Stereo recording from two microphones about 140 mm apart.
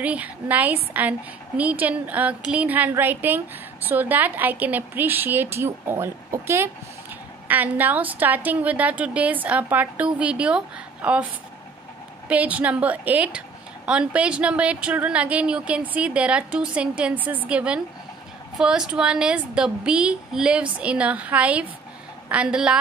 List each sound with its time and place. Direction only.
0.0 s a woman's voice: 10° right (ahead or behind)
12.3 s a woman's voice: 10° right (ahead or behind)